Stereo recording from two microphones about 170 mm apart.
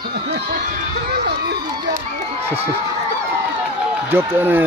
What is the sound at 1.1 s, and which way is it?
Speech, 70° right (ahead or behind).